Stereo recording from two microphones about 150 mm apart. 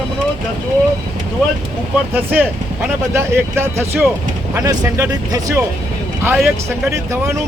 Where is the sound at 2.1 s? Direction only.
10° right (ahead or behind).